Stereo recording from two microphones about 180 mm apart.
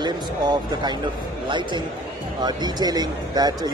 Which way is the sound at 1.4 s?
25° right (ahead or behind).